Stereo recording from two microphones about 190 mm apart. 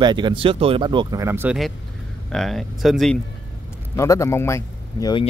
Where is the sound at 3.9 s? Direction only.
15° left (ahead or behind).